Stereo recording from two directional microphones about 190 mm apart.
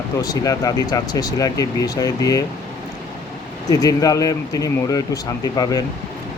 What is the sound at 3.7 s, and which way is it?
Speech, 20° left (ahead or behind).